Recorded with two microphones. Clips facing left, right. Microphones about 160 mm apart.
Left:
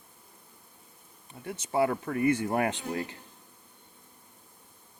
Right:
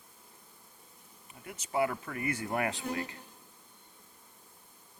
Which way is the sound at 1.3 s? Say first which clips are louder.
Left 4 dB; 30° left (ahead or behind).